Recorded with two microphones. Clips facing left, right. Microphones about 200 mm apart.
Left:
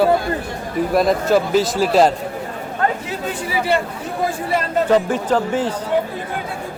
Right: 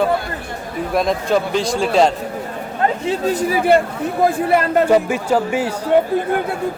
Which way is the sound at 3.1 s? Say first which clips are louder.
Right 7 dB; 40° right (ahead or behind).